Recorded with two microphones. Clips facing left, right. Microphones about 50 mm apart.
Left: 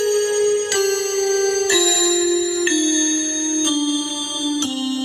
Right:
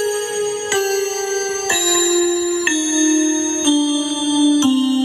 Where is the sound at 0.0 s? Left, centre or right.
Right.